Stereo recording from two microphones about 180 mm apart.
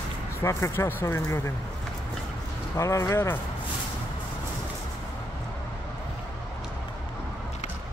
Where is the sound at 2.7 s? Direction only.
15° left (ahead or behind).